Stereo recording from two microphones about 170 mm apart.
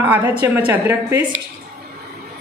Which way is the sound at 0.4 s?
10° right (ahead or behind).